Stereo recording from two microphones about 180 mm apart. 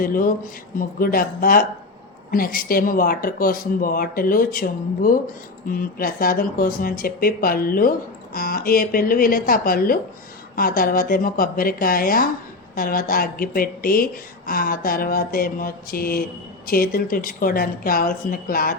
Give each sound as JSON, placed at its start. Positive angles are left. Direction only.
{"t": 0.0, "sound": "speech", "side_deg": 50}